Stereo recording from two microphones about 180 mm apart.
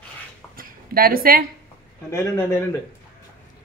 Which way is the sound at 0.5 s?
55° right (ahead or behind).